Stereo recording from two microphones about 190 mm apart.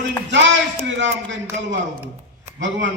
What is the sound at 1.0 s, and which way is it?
A man's voice, 70° right (ahead or behind).